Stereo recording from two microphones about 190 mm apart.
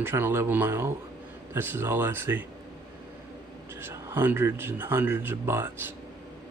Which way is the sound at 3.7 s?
15° right (ahead or behind).